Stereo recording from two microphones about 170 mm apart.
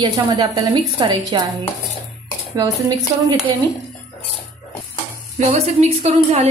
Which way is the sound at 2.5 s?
20° right (ahead or behind).